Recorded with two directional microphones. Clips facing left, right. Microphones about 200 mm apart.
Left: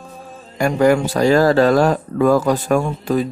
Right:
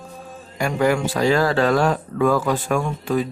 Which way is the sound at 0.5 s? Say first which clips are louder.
Left 5 dB; 45° left (ahead or behind).